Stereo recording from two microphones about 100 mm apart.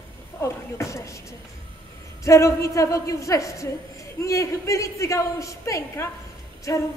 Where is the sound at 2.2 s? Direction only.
30° left (ahead or behind).